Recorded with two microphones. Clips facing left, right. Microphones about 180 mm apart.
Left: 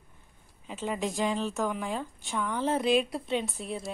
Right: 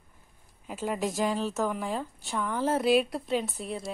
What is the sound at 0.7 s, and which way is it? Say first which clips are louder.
A woman's voice: right 1 dB; 5° right (ahead or behind).